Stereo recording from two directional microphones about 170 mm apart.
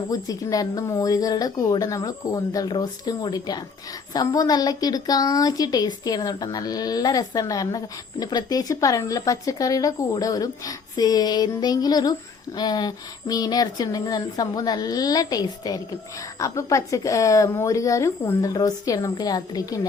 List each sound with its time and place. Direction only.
0.1 s speech: 20° left (ahead or behind)